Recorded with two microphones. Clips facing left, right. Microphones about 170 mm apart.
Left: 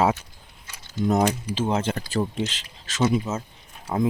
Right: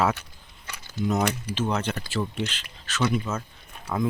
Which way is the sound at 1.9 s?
35° left (ahead or behind).